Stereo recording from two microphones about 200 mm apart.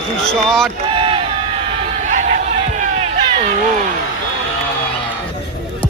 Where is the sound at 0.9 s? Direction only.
25° right (ahead or behind).